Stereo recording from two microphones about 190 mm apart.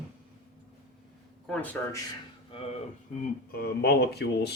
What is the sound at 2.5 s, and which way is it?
Speech, 30° left (ahead or behind).